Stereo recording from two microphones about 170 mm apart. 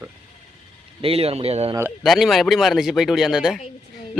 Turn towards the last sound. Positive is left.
turn(degrees=-5)  # may be behind; listen again after turning